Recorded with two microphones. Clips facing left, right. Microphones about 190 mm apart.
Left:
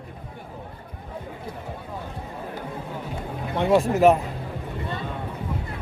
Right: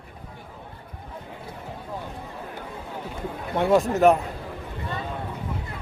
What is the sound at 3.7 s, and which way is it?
Speech, 5° left (ahead or behind).